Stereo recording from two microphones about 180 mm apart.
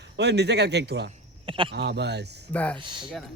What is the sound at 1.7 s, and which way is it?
Speech, 65° right (ahead or behind).